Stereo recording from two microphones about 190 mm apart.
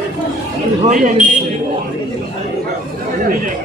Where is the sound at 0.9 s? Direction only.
45° right (ahead or behind).